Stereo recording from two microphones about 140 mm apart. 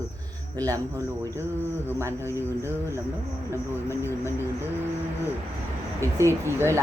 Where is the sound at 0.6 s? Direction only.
20° right (ahead or behind).